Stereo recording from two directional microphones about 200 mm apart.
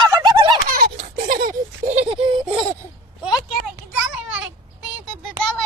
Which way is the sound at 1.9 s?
25° right (ahead or behind).